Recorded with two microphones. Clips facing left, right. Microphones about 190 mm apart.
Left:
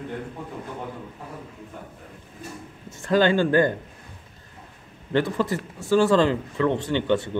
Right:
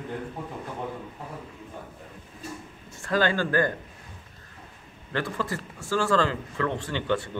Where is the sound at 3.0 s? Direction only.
20° left (ahead or behind).